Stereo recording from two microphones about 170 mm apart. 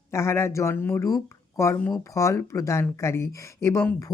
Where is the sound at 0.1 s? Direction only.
15° left (ahead or behind).